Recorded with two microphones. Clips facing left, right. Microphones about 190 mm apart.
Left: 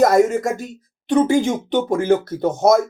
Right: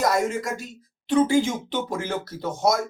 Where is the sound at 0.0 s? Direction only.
50° left (ahead or behind).